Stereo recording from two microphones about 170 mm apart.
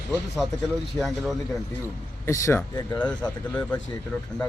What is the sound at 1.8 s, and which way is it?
Speech, 20° left (ahead or behind).